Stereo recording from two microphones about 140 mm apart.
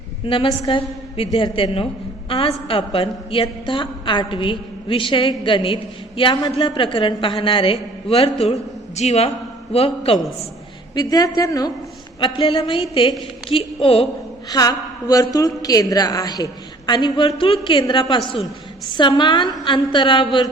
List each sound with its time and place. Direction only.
0.3 s a woman's voice: 40° left (ahead or behind)
10.9 s a woman's voice: 30° left (ahead or behind)
12.2 s a woman's voice: 40° left (ahead or behind)
14.5 s a woman's voice: 25° left (ahead or behind)